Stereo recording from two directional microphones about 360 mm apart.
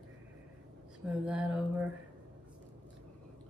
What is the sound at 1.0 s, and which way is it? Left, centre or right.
Speech, centre.